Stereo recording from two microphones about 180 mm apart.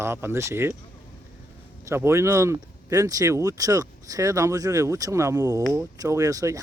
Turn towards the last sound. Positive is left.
turn(degrees=-15)  # may be behind; listen again after turning